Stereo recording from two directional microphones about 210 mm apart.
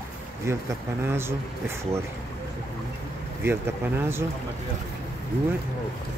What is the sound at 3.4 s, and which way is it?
Speech, 10° right (ahead or behind).